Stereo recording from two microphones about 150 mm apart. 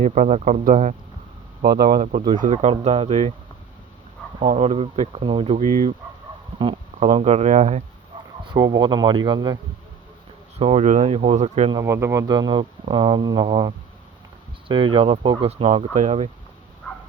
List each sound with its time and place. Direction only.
0.0 s speech: 55° right (ahead or behind)
1.6 s speech: 90° right
2.4 s speech: 50° right (ahead or behind)
4.4 s speech: 50° right (ahead or behind)
6.6 s speech: 35° right (ahead or behind)
7.1 s speech: 45° right (ahead or behind)
8.4 s speech: 25° right (ahead or behind)
10.6 s speech: 45° right (ahead or behind)
11.7 s speech: 20° right (ahead or behind); by 16.3 s 45° right (ahead or behind)
16.9 s a sound: 5° left (ahead or behind)